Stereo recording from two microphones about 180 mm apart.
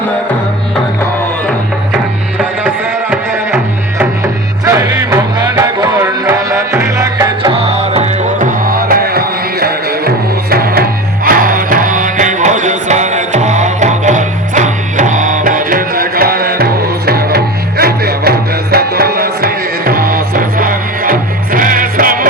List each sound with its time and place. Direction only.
2.4 s music: 5° right (ahead or behind)
7.5 s music: 35° right (ahead or behind); by 22.3 s 50° right (ahead or behind)